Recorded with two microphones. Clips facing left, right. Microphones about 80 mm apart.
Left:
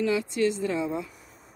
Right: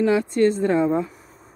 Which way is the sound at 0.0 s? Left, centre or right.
Right.